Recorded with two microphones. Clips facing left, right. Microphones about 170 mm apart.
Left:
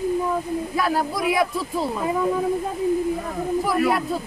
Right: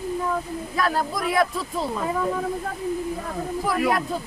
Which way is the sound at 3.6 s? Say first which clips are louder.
Even; 5° left (ahead or behind).